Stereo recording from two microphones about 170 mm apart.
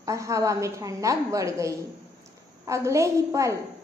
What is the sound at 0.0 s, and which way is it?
A woman's voice, 20° right (ahead or behind).